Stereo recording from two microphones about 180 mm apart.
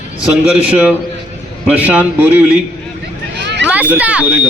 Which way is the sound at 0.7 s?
5° right (ahead or behind).